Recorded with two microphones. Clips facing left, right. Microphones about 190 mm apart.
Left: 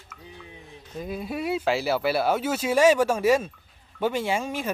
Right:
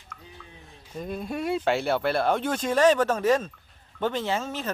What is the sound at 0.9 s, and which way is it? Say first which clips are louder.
Speech: even; 5° left (ahead or behind).